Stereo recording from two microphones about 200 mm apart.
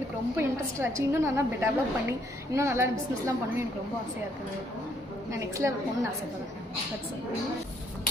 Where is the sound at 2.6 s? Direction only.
15° right (ahead or behind).